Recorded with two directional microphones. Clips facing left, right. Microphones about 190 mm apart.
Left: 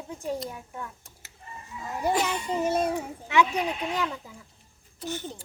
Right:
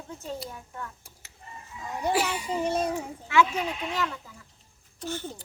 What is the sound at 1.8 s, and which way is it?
Speech, centre (ahead or behind).